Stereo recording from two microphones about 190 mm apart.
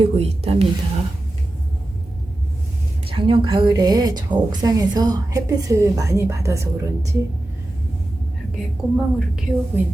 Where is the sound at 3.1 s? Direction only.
25° right (ahead or behind).